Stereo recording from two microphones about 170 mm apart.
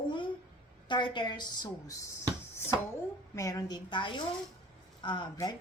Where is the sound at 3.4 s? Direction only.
20° left (ahead or behind).